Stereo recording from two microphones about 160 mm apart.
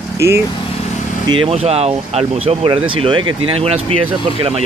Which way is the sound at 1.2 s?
30° right (ahead or behind).